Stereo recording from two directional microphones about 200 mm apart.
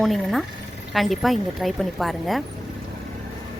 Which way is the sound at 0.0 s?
Centre (ahead or behind).